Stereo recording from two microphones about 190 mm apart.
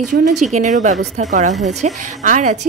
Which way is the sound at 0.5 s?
40° right (ahead or behind).